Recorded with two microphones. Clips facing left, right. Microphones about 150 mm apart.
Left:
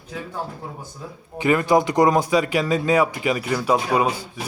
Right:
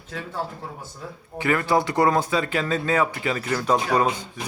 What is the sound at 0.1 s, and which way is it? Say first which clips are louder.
Speech: even; 15° left (ahead or behind).